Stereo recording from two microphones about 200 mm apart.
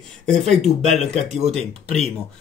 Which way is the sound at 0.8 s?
35° right (ahead or behind).